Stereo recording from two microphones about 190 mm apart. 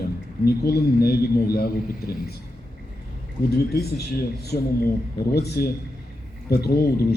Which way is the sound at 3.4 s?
55° left (ahead or behind).